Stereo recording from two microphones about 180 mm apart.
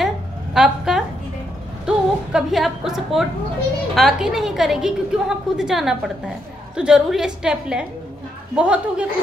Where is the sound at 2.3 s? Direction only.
Centre (ahead or behind).